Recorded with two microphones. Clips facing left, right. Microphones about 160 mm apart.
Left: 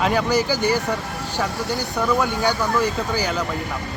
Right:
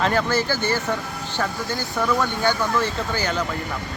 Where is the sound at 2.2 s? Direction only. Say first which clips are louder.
Left 1 dB; 10° left (ahead or behind).